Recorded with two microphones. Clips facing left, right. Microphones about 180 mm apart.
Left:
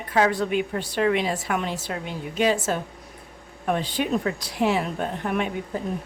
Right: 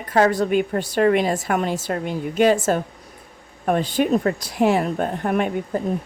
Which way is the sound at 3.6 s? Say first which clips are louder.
Right 5 dB; 45° right (ahead or behind).